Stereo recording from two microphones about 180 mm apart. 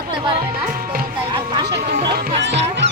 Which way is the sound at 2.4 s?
75° right (ahead or behind).